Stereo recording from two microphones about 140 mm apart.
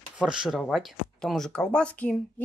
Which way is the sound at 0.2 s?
5° right (ahead or behind).